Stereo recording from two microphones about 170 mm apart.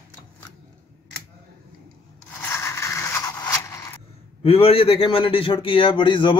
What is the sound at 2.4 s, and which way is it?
Scrape, 15° left (ahead or behind).